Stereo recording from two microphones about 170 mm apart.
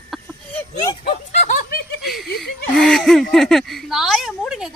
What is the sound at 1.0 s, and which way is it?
Snicker, 45° left (ahead or behind).